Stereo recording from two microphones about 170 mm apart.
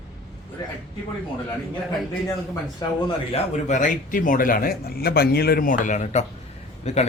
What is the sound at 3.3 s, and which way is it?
Speech, 40° left (ahead or behind).